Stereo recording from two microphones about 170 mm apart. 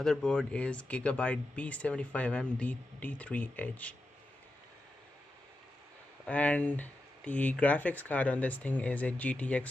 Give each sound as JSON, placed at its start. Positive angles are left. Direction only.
{"t": 0.0, "sound": "speech", "side_deg": 5}
{"t": 6.2, "sound": "speech", "side_deg": 10}